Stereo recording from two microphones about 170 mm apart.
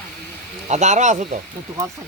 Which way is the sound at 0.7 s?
45° right (ahead or behind).